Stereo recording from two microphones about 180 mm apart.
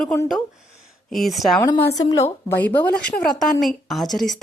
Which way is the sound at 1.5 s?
20° left (ahead or behind).